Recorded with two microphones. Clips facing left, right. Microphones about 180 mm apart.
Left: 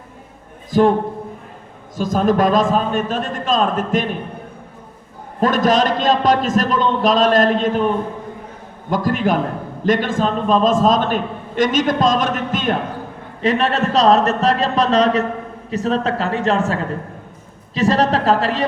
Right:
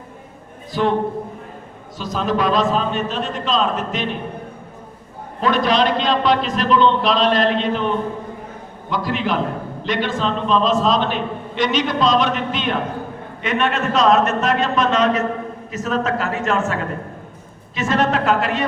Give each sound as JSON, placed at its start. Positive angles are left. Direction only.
{"t": 0.7, "sound": "a man's voice", "side_deg": 45}
{"t": 2.0, "sound": "a man's voice", "side_deg": 45}
{"t": 5.4, "sound": "a man's voice", "side_deg": 45}
{"t": 8.9, "sound": "a man's voice", "side_deg": 45}
{"t": 13.4, "sound": "speech", "side_deg": 35}